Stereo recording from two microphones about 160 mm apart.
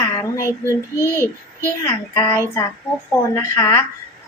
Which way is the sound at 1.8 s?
20° left (ahead or behind).